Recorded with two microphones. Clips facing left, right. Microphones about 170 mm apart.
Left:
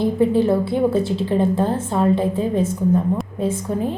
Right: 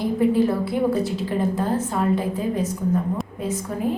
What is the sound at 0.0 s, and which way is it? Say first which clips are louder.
A woman's voice: left 2 dB; 25° left (ahead or behind).